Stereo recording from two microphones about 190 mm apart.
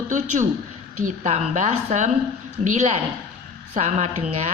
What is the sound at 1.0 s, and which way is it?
A woman's voice, 40° right (ahead or behind).